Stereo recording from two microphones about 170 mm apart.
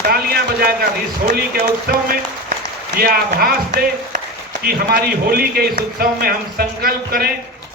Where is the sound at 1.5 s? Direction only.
60° right (ahead or behind).